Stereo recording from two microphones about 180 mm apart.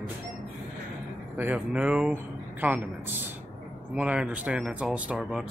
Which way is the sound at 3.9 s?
5° right (ahead or behind).